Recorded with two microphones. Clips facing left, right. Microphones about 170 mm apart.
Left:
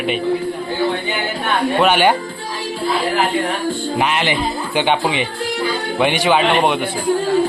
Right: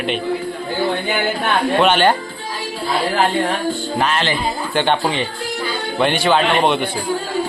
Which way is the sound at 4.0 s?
15° left (ahead or behind).